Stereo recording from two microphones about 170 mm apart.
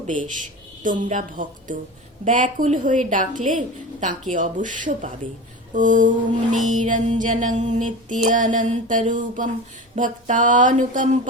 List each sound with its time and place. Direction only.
0.1 s music: 50° right (ahead or behind)